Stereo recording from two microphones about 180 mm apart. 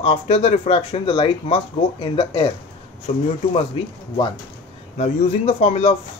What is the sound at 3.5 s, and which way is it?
Speech, 25° left (ahead or behind).